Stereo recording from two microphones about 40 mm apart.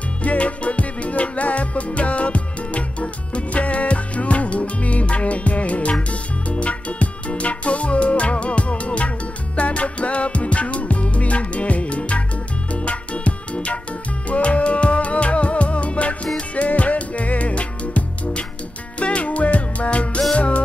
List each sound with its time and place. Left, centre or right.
0.2 s music: left